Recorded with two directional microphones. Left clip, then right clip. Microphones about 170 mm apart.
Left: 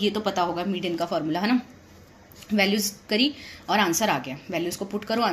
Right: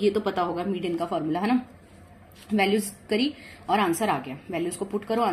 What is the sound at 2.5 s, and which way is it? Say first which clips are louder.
A woman's voice: even; 15° left (ahead or behind).